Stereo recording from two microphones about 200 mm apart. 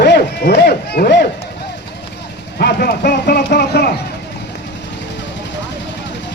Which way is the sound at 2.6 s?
50° left (ahead or behind).